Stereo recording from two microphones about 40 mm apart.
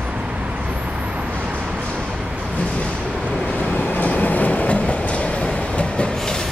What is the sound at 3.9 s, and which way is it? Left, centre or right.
Train, left.